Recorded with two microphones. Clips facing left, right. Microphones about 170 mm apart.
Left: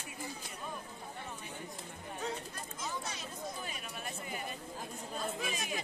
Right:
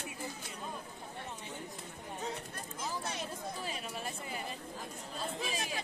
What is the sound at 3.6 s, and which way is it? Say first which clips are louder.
Speech: right 3 dB; 30° right (ahead or behind).